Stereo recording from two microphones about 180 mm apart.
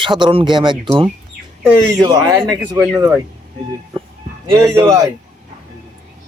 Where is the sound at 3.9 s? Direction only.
30° right (ahead or behind).